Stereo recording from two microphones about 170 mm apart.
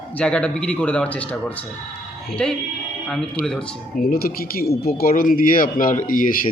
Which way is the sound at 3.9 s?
60° left (ahead or behind).